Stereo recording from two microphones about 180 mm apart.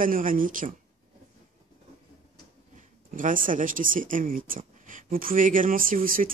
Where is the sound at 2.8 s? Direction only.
45° right (ahead or behind).